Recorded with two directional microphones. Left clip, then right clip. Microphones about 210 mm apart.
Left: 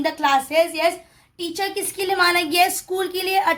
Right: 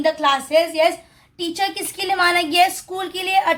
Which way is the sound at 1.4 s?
Centre (ahead or behind).